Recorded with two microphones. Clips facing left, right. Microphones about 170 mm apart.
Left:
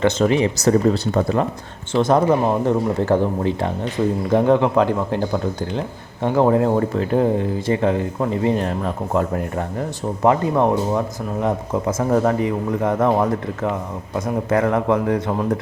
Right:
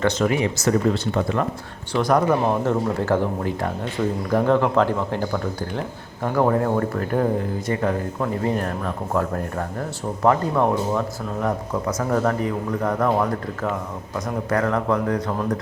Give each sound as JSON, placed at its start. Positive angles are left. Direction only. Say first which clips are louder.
{"t": 0.0, "sound": "speech", "louder": "left 4 dB", "side_deg": 25}
{"t": 0.5, "sound": "speech", "louder": "left 4 dB", "side_deg": 40}
{"t": 1.9, "sound": "speech", "louder": "left 3 dB", "side_deg": 25}
{"t": 2.4, "sound": "speech", "louder": "left 2 dB", "side_deg": 15}
{"t": 4.3, "sound": "speech", "louder": "left 3 dB", "side_deg": 20}
{"t": 10.2, "sound": "speech", "louder": "left 2 dB", "side_deg": 15}